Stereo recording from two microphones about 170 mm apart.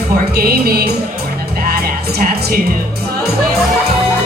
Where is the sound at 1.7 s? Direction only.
60° right (ahead or behind).